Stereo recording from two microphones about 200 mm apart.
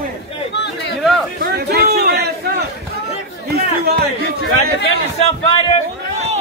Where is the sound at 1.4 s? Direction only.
50° right (ahead or behind).